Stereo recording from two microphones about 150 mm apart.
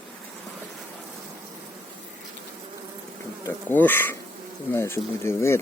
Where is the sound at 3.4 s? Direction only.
10° left (ahead or behind).